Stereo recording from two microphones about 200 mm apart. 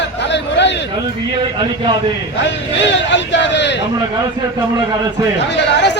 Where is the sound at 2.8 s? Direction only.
65° left (ahead or behind).